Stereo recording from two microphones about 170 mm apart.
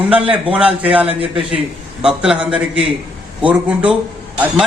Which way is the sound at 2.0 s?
5° right (ahead or behind).